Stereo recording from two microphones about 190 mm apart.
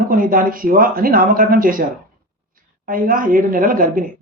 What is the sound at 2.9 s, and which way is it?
Speech, 45° right (ahead or behind).